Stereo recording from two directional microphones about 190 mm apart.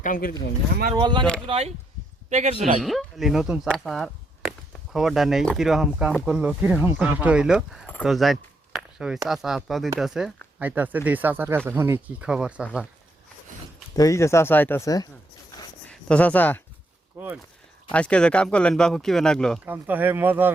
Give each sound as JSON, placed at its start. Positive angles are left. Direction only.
{"t": 0.0, "sound": "speech", "side_deg": 45}
{"t": 0.9, "sound": "a man's voice", "side_deg": -25}
{"t": 2.8, "sound": "speech", "side_deg": 0}
{"t": 13.9, "sound": "speech", "side_deg": 15}
{"t": 15.9, "sound": "speech", "side_deg": 5}
{"t": 17.2, "sound": "speech", "side_deg": -10}
{"t": 17.9, "sound": "speech", "side_deg": 5}
{"t": 19.6, "sound": "speech", "side_deg": -10}